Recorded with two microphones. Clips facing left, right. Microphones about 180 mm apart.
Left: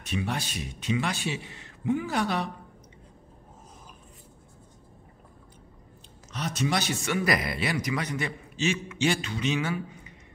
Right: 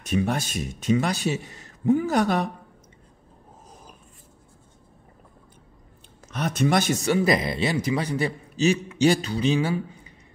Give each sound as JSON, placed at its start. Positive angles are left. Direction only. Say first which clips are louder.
{"t": 0.0, "sound": "speech", "louder": "right 6 dB", "side_deg": -45}
{"t": 6.3, "sound": "speech", "louder": "right 6 dB", "side_deg": -55}